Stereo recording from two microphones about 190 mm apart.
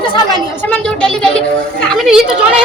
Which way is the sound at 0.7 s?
5° left (ahead or behind).